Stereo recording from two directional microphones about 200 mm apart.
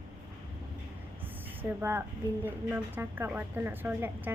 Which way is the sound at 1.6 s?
10° right (ahead or behind).